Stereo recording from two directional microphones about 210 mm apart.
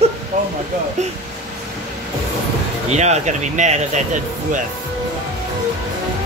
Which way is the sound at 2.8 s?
30° right (ahead or behind).